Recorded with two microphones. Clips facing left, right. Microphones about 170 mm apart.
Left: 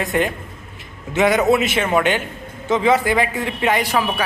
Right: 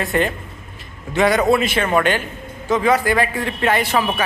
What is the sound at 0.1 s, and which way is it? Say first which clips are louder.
A man's voice: right 1 dB; 10° left (ahead or behind).